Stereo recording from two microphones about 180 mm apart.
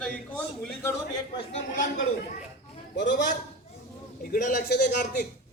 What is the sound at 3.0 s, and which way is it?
Speech, 75° left (ahead or behind).